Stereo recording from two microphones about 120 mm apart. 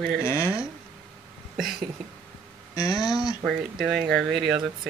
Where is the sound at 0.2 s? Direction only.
20° left (ahead or behind).